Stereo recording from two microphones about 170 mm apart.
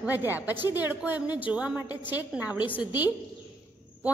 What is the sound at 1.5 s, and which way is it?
A woman's voice, 10° right (ahead or behind).